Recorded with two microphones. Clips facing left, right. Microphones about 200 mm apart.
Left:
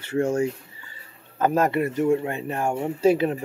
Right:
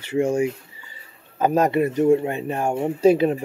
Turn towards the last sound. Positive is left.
turn(degrees=-20)  # may be behind; listen again after turning